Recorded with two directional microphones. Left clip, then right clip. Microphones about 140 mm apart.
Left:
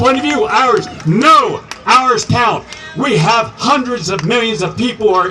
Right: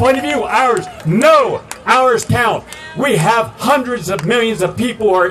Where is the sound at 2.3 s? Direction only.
40° right (ahead or behind).